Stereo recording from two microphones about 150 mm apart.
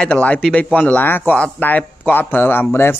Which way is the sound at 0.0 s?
10° left (ahead or behind).